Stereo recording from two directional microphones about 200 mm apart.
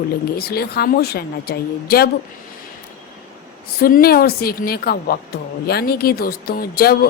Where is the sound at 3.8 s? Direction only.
45° left (ahead or behind).